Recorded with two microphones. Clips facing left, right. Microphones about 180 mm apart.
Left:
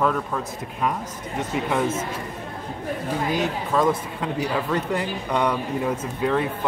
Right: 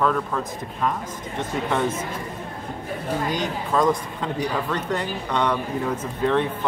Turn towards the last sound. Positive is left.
turn(degrees=5)  # may be behind; listen again after turning